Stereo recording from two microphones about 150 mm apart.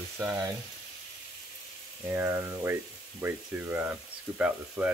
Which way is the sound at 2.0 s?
15° right (ahead or behind).